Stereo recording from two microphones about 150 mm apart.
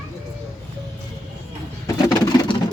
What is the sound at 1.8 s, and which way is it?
Pigeon, 25° left (ahead or behind).